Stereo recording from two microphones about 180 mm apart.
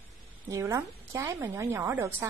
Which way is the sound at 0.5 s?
15° right (ahead or behind).